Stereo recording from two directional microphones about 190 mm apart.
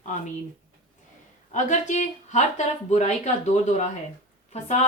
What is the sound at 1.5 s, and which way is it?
Speech, 40° left (ahead or behind).